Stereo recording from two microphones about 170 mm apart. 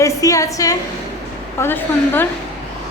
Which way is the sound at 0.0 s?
20° left (ahead or behind).